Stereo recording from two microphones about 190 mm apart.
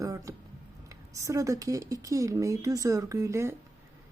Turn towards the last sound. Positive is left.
turn(degrees=-15)  # may be behind; listen again after turning